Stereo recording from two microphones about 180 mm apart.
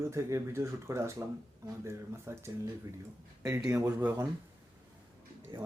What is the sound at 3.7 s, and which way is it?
Speech, 15° right (ahead or behind).